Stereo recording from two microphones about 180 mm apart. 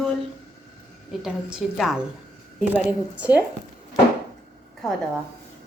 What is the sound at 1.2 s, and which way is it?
A woman's voice, centre (ahead or behind).